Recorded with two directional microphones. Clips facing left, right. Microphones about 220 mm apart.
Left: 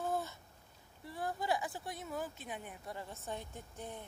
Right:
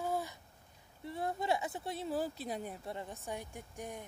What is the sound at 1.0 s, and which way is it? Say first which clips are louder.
Speech: right 3 dB; 25° right (ahead or behind).